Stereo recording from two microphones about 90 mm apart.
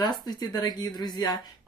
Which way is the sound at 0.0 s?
55° left (ahead or behind).